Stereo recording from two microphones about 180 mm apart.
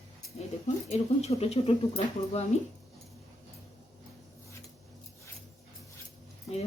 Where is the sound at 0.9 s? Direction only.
35° left (ahead or behind).